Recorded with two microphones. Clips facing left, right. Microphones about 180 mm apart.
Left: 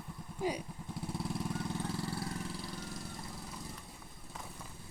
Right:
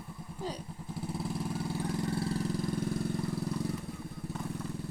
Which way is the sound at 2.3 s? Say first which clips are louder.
Right 9 dB; 45° right (ahead or behind).